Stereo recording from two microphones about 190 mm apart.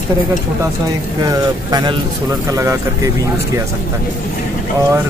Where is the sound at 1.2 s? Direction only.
20° right (ahead or behind).